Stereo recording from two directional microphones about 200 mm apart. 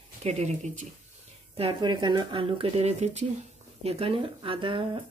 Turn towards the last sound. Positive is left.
turn(degrees=-25)  # may be behind; listen again after turning